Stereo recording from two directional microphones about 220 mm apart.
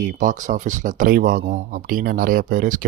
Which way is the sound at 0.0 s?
40° right (ahead or behind).